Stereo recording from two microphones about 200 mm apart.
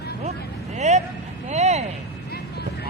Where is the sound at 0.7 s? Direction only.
35° right (ahead or behind).